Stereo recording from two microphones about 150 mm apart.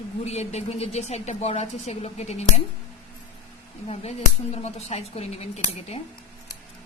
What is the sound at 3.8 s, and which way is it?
Speech, 45° left (ahead or behind).